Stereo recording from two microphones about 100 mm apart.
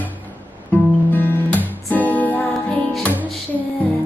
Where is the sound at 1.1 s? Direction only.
20° left (ahead or behind).